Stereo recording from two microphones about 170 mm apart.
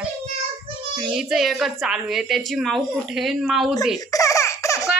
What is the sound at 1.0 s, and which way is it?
A woman's voice, 5° right (ahead or behind).